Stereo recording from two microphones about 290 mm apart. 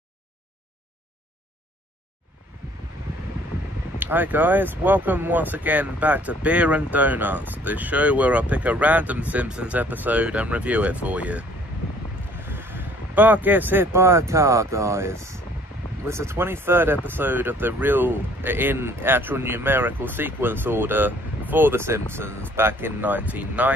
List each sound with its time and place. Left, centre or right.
4.0 s speech: centre
12.4 s speech: centre